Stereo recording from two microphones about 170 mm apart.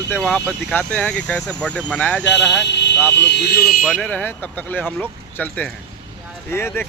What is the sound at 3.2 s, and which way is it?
Speech, 85° left.